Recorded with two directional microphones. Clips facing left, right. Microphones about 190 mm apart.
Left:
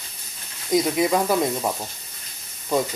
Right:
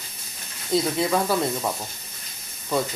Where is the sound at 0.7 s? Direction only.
15° left (ahead or behind).